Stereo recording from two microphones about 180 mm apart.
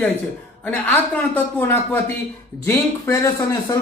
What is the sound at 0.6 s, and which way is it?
A man's voice, 10° left (ahead or behind).